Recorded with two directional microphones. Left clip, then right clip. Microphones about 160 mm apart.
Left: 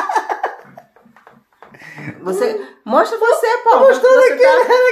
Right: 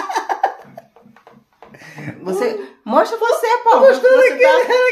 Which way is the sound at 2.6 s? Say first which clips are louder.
Right 1 dB; 15° right (ahead or behind).